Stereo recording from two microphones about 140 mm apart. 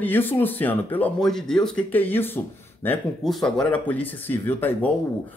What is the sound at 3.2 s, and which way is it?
Speech, centre (ahead or behind).